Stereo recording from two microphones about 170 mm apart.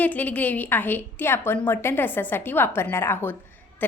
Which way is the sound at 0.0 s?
10° left (ahead or behind).